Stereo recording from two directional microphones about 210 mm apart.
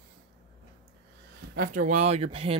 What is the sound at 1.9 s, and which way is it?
Speech, 30° right (ahead or behind).